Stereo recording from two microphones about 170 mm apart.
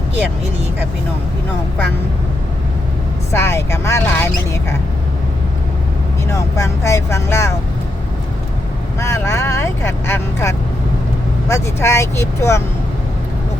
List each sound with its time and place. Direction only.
3.3 s speech: 15° left (ahead or behind)
6.3 s speech: 15° left (ahead or behind)
9.0 s speech: 15° left (ahead or behind)